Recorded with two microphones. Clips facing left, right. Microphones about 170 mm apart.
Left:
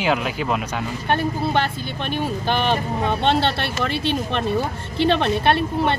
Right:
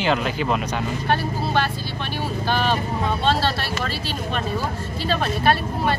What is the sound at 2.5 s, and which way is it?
Speech, 20° left (ahead or behind).